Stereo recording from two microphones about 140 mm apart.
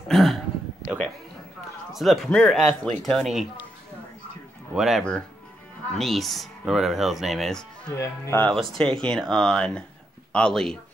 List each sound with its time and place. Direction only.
0.1 s a sound: centre (ahead or behind)
0.8 s music: centre (ahead or behind)
2.0 s speech: centre (ahead or behind)
4.7 s speech: centre (ahead or behind)
8.0 s speech: 15° left (ahead or behind)
8.5 s speech: 5° left (ahead or behind)